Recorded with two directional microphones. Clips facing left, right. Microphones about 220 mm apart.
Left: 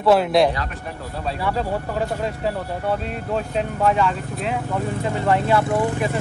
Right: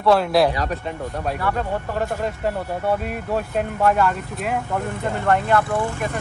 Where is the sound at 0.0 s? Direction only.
Centre (ahead or behind).